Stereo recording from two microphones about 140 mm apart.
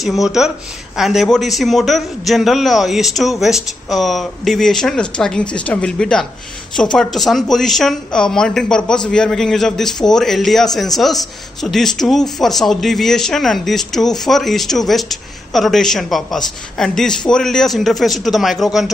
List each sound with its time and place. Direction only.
0.0 s speech: centre (ahead or behind)